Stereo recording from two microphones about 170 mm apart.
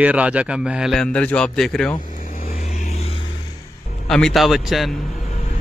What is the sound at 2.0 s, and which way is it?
Vehicle, 50° left (ahead or behind).